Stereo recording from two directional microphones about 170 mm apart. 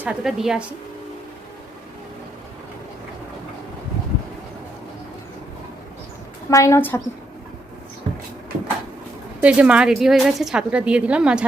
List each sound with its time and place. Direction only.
0.0 s a woman's voice: 5° right (ahead or behind)
6.5 s a woman's voice: 20° left (ahead or behind)
9.4 s a woman's voice: 5° right (ahead or behind)